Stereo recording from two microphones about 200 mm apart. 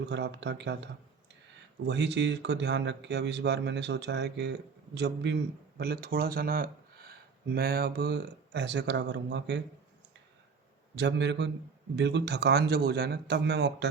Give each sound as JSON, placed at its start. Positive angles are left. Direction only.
{"t": 0.0, "sound": "speech", "side_deg": -60}
{"t": 1.9, "sound": "speech", "side_deg": -60}
{"t": 10.9, "sound": "speech", "side_deg": -60}